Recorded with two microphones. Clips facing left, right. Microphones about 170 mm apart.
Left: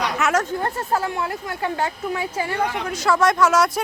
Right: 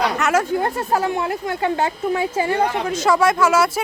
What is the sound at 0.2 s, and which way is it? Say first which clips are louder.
Speech: right 3 dB; 5° right (ahead or behind).